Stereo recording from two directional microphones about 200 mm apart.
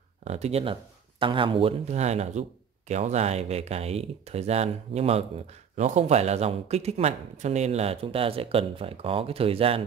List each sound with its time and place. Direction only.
0.2 s speech: 35° right (ahead or behind)